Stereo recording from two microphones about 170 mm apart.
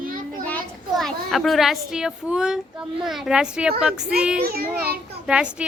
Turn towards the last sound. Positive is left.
turn(degrees=-5)  # may be behind; listen again after turning